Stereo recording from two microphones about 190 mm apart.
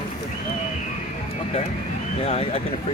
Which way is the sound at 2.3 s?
30° left (ahead or behind).